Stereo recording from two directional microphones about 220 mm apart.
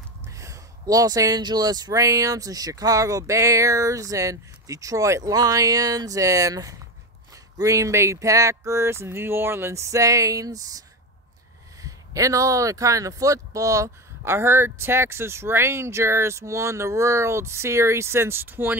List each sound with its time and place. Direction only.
0.3 s speech: 15° right (ahead or behind)
11.8 s speech: 15° right (ahead or behind)